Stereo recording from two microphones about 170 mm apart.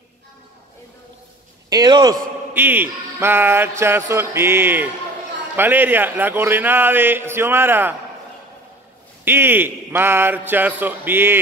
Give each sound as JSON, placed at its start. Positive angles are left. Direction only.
{"t": 1.7, "sound": "a man's voice", "side_deg": -25}
{"t": 2.5, "sound": "speech", "side_deg": -10}
{"t": 9.2, "sound": "speech", "side_deg": -15}